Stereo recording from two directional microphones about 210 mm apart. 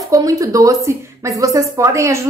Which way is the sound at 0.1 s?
15° right (ahead or behind).